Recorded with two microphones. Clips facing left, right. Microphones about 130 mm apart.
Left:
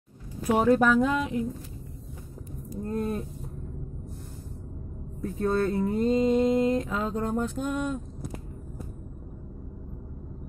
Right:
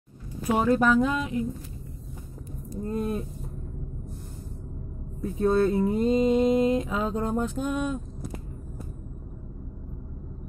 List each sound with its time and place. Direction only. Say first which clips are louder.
0.6 s speech: even; 5° left (ahead or behind)
2.8 s speech: right 1 dB; 5° right (ahead or behind)
5.2 s mantra: right 3 dB; 15° right (ahead or behind)